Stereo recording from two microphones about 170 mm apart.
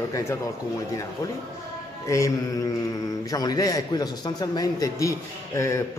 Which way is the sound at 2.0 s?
20° left (ahead or behind).